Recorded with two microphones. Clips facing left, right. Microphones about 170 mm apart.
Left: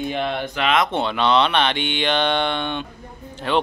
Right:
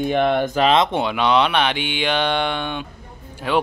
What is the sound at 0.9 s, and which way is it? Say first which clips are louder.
Speech: right 1 dB; 10° right (ahead or behind).